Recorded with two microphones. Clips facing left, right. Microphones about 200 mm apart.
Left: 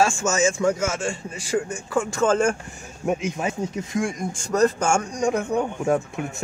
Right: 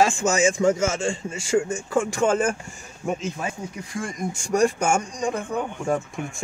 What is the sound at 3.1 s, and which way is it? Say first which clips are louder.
Speech: left 3 dB; 15° left (ahead or behind).